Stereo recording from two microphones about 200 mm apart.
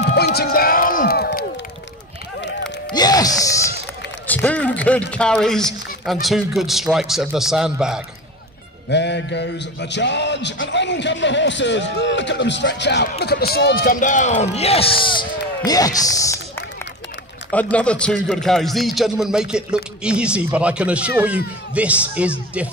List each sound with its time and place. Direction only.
0.1 s music: 55° left (ahead or behind)
2.9 s gasp: 20° left (ahead or behind)
4.3 s a sound: 5° left (ahead or behind)
5.1 s a man's voice: 5° left (ahead or behind)
8.9 s a man's voice: 60° left (ahead or behind); by 22.7 s 5° right (ahead or behind)